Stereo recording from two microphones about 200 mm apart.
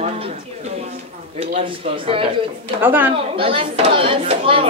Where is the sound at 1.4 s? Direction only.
30° right (ahead or behind).